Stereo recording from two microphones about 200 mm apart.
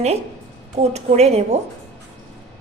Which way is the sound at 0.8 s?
35° right (ahead or behind).